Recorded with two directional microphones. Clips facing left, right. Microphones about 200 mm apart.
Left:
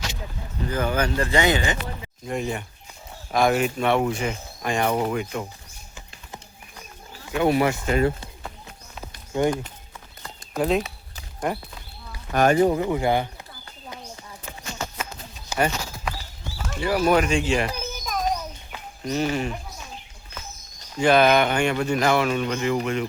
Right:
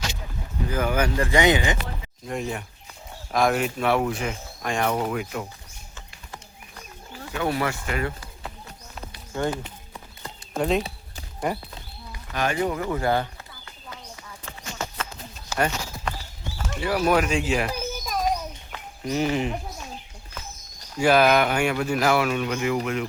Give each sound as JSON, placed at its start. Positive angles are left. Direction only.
{"t": 0.7, "sound": "speech", "side_deg": -10}
{"t": 2.2, "sound": "speech", "side_deg": 0}
{"t": 7.3, "sound": "speech", "side_deg": 20}
{"t": 9.3, "sound": "speech", "side_deg": 15}
{"t": 10.6, "sound": "speech", "side_deg": 0}
{"t": 12.3, "sound": "speech", "side_deg": 45}
{"t": 12.5, "sound": "speech", "side_deg": 25}
{"t": 15.5, "sound": "clip-clop", "side_deg": 5}
{"t": 16.7, "sound": "a child's voice", "side_deg": 0}
{"t": 19.0, "sound": "speech", "side_deg": -15}
{"t": 21.0, "sound": "speech", "side_deg": -5}